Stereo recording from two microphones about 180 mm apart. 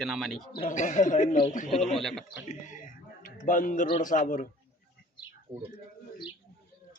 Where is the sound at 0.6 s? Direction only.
40° left (ahead or behind).